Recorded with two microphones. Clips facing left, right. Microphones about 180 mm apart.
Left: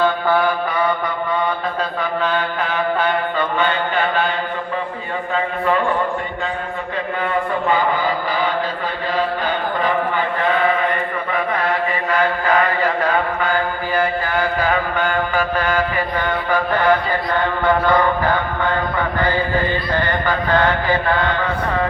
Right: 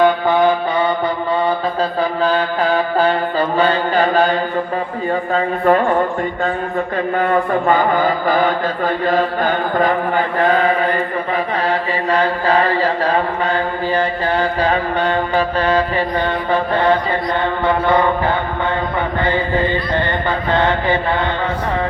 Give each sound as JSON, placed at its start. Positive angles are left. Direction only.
{"t": 0.0, "sound": "mantra", "side_deg": -20}
{"t": 2.0, "sound": "mantra", "side_deg": -35}
{"t": 5.3, "sound": "chant", "side_deg": -45}
{"t": 7.2, "sound": "chant", "side_deg": -50}
{"t": 11.7, "sound": "mantra", "side_deg": -30}